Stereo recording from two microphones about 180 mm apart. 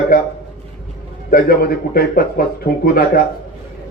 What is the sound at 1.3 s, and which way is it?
Speech, 55° left (ahead or behind).